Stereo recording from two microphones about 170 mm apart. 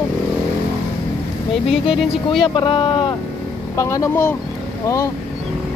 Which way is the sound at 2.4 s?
30° left (ahead or behind).